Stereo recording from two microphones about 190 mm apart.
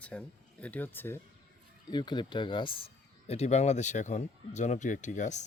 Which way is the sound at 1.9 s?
25° left (ahead or behind).